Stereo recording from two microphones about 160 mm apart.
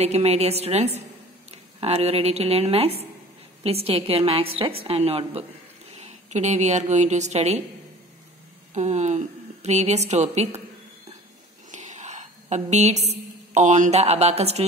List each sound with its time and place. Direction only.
0.0 s a woman's voice: 40° right (ahead or behind)
8.7 s a woman's voice: 45° right (ahead or behind)
11.7 s a sound: 50° right (ahead or behind)
13.6 s a woman's voice: 50° right (ahead or behind)